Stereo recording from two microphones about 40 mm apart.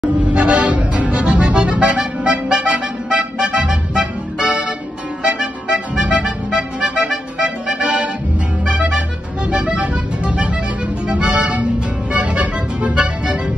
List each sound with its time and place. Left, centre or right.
0.2 s music: right